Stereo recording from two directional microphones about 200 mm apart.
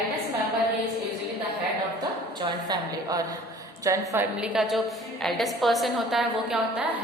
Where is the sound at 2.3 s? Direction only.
20° right (ahead or behind).